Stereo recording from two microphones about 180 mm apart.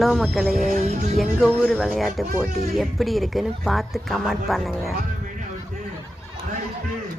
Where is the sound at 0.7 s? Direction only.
40° right (ahead or behind).